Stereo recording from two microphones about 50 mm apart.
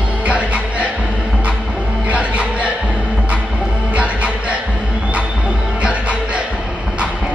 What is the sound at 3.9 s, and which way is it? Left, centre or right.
Music, right.